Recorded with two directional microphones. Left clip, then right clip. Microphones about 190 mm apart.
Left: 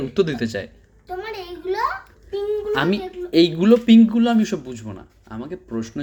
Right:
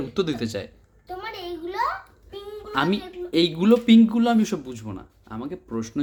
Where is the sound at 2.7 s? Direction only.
5° right (ahead or behind).